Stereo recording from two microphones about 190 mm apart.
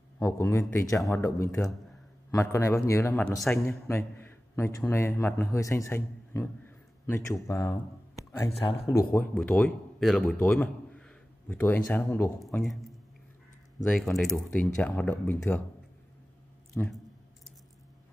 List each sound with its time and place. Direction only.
0.2 s a man's voice: 15° left (ahead or behind)
3.5 s a man's voice: 15° left (ahead or behind)
12.4 s speech: centre (ahead or behind)
16.8 s a man's voice: 10° left (ahead or behind)